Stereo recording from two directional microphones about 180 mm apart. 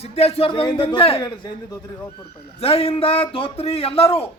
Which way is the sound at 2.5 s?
35° left (ahead or behind).